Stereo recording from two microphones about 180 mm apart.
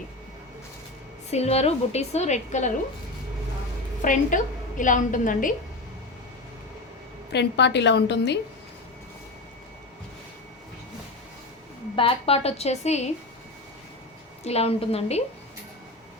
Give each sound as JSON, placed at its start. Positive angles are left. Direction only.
{"t": 1.3, "sound": "a woman's voice", "side_deg": 35}
{"t": 4.0, "sound": "a woman's voice", "side_deg": 45}
{"t": 7.3, "sound": "a woman's voice", "side_deg": 75}
{"t": 11.9, "sound": "a woman's voice", "side_deg": 30}
{"t": 14.4, "sound": "a woman's voice", "side_deg": 35}